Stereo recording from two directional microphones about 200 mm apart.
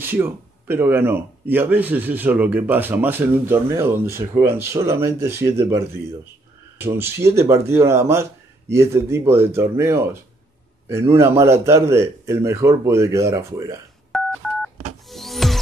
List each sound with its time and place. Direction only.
0.0 s speech: 10° right (ahead or behind)
14.1 s telephone dialing: 5° left (ahead or behind)
15.0 s music: centre (ahead or behind)